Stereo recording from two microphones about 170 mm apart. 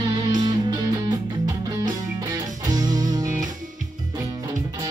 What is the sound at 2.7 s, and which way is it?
Music, 25° right (ahead or behind).